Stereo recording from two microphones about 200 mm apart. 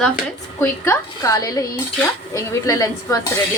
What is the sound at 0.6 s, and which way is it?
Speech, 15° left (ahead or behind).